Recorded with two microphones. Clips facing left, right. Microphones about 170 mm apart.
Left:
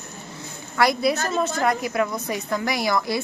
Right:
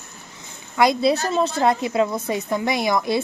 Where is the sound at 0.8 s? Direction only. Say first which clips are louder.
Right 3 dB; 25° right (ahead or behind).